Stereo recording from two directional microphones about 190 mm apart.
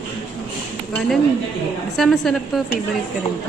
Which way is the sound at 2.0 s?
Centre (ahead or behind).